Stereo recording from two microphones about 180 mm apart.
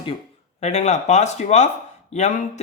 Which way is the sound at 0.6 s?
40° left (ahead or behind).